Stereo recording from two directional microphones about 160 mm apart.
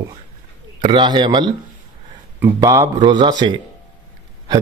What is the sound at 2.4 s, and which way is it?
Speech, 15° right (ahead or behind).